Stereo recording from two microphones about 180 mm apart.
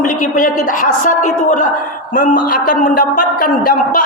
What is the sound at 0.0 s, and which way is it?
A man's voice, 45° left (ahead or behind).